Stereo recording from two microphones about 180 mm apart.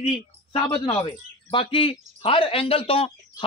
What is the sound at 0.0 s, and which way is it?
Speech, 35° left (ahead or behind).